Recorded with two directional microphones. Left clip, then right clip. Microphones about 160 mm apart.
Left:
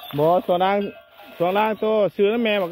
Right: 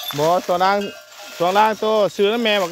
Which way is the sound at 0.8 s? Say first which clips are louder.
Right 1 dB; 20° right (ahead or behind).